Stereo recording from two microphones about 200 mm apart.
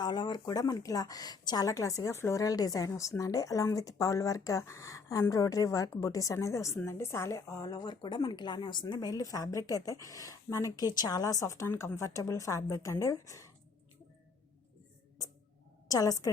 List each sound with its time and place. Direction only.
0.0 s speech: 20° left (ahead or behind)
15.9 s speech: 15° left (ahead or behind)